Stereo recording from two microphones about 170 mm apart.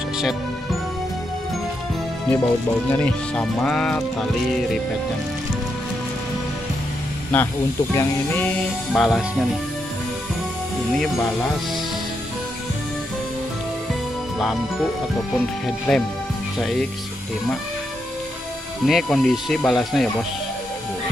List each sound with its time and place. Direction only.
2.9 s speech: 5° left (ahead or behind)
7.3 s speech: 10° left (ahead or behind)
14.4 s speech: centre (ahead or behind)
18.9 s speech: centre (ahead or behind)